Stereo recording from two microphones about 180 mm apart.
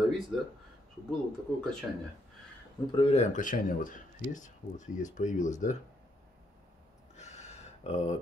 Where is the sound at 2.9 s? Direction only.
35° left (ahead or behind).